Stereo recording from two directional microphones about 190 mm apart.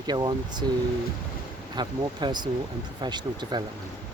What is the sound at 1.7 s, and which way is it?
Speech, 20° right (ahead or behind).